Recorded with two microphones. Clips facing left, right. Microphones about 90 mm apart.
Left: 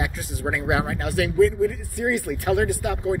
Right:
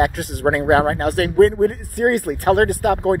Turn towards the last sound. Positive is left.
turn(degrees=-50)  # may be behind; listen again after turning